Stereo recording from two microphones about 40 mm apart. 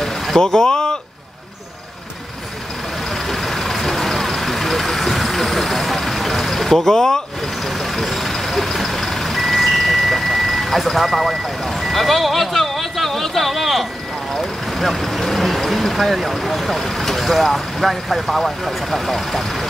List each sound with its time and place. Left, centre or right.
0.4 s speech: centre
3.3 s vehicle: centre
14.3 s speech: centre